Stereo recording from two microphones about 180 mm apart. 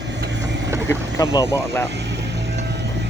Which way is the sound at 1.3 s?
15° left (ahead or behind).